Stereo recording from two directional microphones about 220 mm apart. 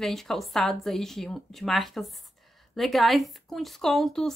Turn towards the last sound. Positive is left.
turn(degrees=0)  # may be behind; listen again after turning